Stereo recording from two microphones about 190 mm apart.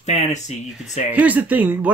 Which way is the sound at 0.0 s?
35° left (ahead or behind).